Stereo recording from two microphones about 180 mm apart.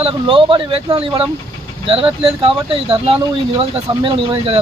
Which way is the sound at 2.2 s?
30° right (ahead or behind).